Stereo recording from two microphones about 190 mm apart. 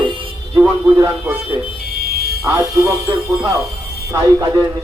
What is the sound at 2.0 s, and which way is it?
Music, 55° right (ahead or behind).